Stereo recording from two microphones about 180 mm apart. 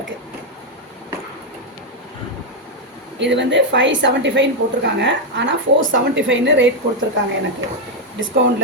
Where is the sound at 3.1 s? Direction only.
75° right (ahead or behind).